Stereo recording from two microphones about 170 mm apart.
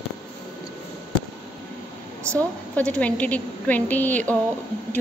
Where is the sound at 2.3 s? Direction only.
10° left (ahead or behind).